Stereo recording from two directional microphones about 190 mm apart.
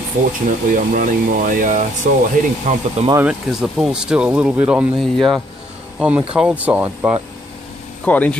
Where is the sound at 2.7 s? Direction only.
40° right (ahead or behind).